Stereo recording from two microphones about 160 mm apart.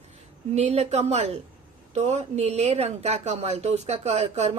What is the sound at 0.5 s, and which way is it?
A woman's voice, 40° right (ahead or behind).